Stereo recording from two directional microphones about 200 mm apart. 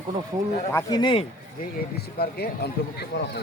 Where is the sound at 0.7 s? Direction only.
15° left (ahead or behind).